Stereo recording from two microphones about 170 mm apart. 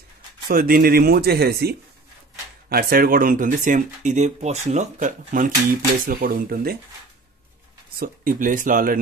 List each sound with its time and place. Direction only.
0.5 s speech: 60° right (ahead or behind)
8.0 s speech: 55° right (ahead or behind)